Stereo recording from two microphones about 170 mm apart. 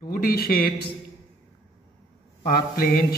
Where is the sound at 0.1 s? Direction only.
60° left (ahead or behind).